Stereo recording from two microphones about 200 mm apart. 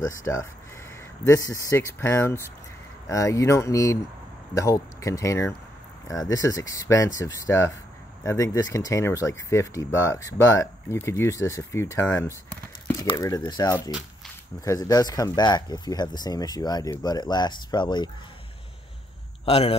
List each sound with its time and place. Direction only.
0.0 s speech: 15° left (ahead or behind)
19.4 s speech: 30° left (ahead or behind)